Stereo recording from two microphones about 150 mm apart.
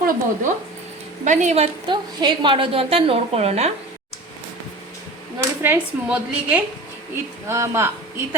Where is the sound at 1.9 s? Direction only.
30° right (ahead or behind).